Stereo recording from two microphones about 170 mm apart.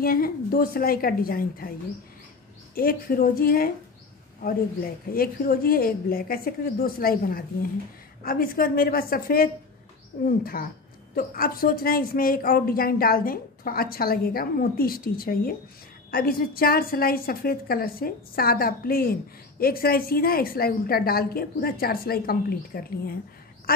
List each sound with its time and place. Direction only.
0.0 s a woman's voice: 60° left (ahead or behind)
2.7 s a woman's voice: 60° left (ahead or behind)